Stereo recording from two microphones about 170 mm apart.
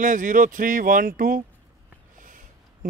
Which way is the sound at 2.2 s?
55° right (ahead or behind).